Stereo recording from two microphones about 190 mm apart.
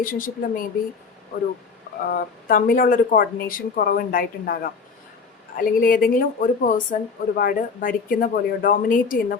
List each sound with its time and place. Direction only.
0.0 s speech: 45° left (ahead or behind)
2.0 s speech: 50° left (ahead or behind)